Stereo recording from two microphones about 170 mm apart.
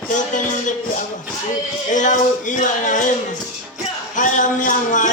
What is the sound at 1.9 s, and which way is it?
Music, 45° left (ahead or behind).